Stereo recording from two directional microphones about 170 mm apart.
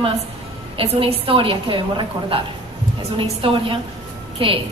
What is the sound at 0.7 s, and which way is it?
A woman's voice, 35° right (ahead or behind).